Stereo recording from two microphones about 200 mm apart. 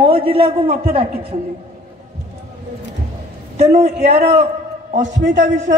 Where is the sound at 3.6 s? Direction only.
30° right (ahead or behind).